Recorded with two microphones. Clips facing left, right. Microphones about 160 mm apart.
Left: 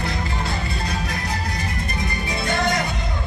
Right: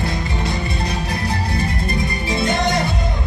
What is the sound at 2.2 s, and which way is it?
Music, 20° right (ahead or behind).